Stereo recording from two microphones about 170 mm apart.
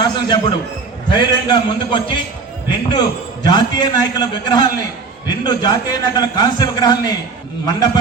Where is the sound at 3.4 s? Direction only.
25° left (ahead or behind).